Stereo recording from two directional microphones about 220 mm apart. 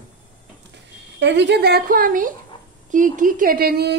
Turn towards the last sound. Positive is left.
turn(degrees=-45)  # may be behind; listen again after turning